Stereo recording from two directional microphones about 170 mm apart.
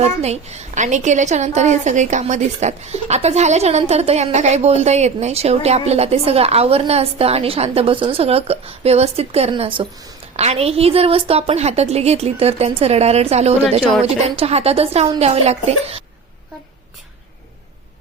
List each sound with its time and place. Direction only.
0.0 s a woman's voice: 40° right (ahead or behind)